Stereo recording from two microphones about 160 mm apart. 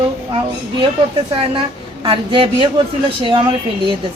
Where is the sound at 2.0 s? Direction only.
35° right (ahead or behind).